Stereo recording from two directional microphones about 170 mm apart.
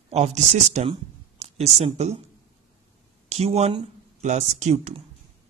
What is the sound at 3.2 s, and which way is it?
Speech, 40° right (ahead or behind).